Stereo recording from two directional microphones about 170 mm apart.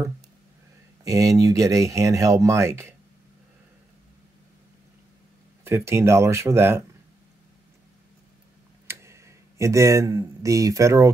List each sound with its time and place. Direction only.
1.0 s speech: 20° right (ahead or behind)
5.9 s speech: 15° right (ahead or behind)
8.8 s speech: 15° right (ahead or behind)